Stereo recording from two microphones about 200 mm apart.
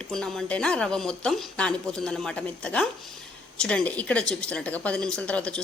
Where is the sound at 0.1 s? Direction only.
5° left (ahead or behind).